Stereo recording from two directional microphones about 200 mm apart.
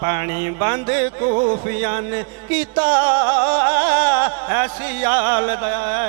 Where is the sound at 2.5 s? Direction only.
10° right (ahead or behind).